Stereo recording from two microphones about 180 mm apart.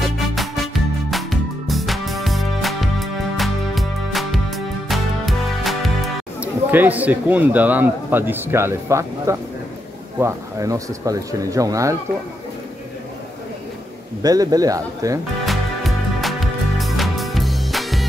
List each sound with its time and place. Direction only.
0.0 s music: centre (ahead or behind); by 9.4 s 15° right (ahead or behind)
10.1 s speech: 15° right (ahead or behind)
14.2 s speech: 20° right (ahead or behind)
15.4 s music: centre (ahead or behind)